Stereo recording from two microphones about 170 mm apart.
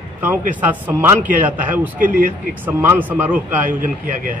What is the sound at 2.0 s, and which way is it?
Speech, 55° right (ahead or behind).